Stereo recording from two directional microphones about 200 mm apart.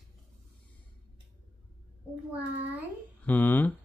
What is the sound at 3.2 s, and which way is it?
Speech, 10° left (ahead or behind).